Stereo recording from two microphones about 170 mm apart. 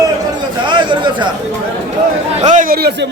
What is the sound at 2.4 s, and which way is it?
Speech, 45° right (ahead or behind).